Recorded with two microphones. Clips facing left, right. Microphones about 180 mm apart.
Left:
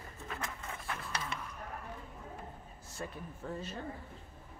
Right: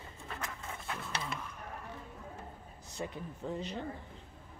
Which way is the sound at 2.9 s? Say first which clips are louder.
Right 3 dB; 15° right (ahead or behind).